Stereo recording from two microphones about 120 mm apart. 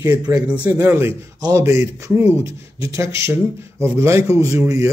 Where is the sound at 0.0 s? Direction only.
25° right (ahead or behind).